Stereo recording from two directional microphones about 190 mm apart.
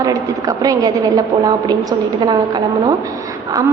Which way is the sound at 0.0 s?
20° right (ahead or behind).